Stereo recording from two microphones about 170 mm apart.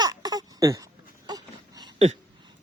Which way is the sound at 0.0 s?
20° right (ahead or behind).